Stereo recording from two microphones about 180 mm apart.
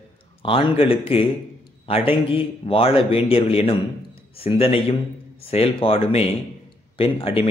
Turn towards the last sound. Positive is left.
turn(degrees=30)  # may be behind; listen again after turning